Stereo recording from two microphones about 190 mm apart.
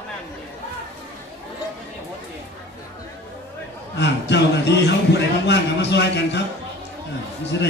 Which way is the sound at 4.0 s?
65° left (ahead or behind).